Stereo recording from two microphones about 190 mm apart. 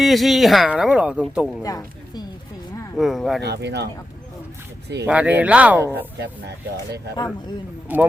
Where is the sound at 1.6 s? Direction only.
20° left (ahead or behind).